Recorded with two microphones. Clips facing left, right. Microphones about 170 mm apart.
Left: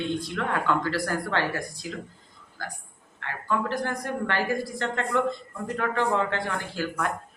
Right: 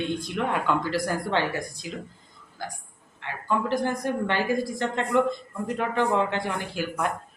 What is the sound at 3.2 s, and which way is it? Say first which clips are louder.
A woman's voice: right 1 dB; 15° right (ahead or behind).